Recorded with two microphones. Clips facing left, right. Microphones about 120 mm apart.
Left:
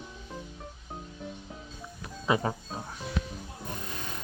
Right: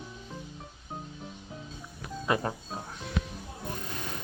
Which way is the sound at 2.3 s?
5° left (ahead or behind).